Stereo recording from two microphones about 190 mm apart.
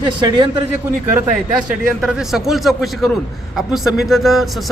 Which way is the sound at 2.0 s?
5° right (ahead or behind).